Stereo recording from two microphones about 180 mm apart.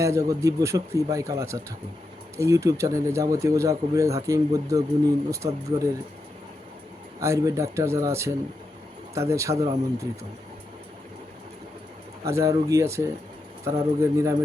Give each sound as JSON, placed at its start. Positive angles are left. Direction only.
{"t": 0.0, "sound": "speech", "side_deg": -15}
{"t": 7.2, "sound": "speech", "side_deg": -15}
{"t": 12.2, "sound": "speech", "side_deg": -15}